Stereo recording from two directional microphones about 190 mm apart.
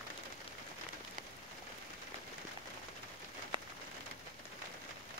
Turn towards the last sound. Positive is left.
turn(degrees=-25)  # may be behind; listen again after turning